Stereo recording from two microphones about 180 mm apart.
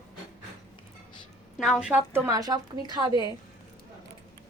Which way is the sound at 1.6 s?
5° right (ahead or behind).